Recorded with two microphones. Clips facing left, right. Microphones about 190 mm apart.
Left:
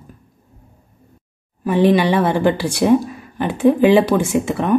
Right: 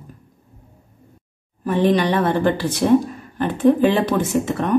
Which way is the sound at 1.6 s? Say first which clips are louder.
Left 3 dB; 10° left (ahead or behind).